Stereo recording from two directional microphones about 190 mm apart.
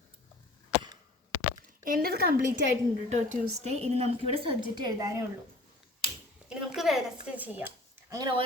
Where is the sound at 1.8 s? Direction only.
50° right (ahead or behind).